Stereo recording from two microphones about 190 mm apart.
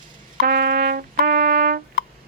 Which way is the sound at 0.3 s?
50° right (ahead or behind).